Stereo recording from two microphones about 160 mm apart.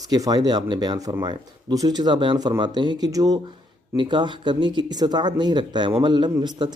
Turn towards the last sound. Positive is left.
turn(degrees=-30)  # may be behind; listen again after turning